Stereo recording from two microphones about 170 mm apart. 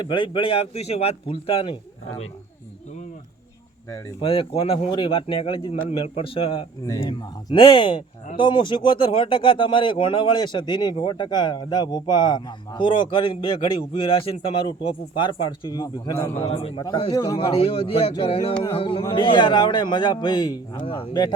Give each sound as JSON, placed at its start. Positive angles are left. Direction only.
{"t": 0.0, "sound": "speech", "side_deg": 30}
{"t": 4.2, "sound": "speech", "side_deg": 35}